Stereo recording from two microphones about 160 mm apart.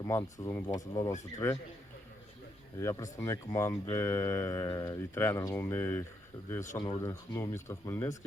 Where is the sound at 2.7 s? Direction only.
20° left (ahead or behind).